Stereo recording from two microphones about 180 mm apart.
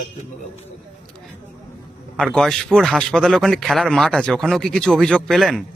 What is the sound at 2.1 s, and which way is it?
Speech, centre (ahead or behind).